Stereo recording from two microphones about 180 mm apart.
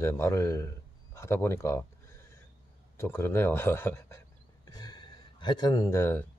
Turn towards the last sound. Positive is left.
turn(degrees=15)  # may be behind; listen again after turning